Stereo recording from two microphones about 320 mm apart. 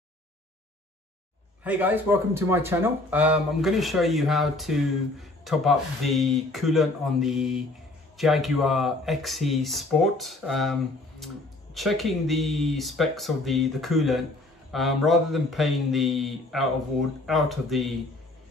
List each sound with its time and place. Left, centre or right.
1.6 s speech: centre